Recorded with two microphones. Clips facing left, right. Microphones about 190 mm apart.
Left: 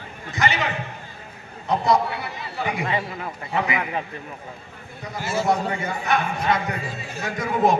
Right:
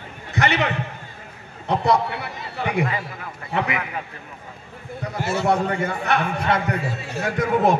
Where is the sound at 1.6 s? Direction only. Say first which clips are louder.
Even; 65° right (ahead or behind).